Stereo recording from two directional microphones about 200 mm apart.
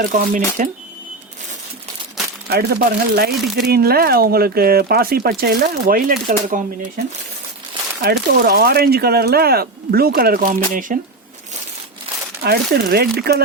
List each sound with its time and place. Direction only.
0.1 s speech: 40° right (ahead or behind)
2.5 s speech: 50° right (ahead or behind)
8.0 s speech: 50° right (ahead or behind)
12.4 s speech: 50° right (ahead or behind)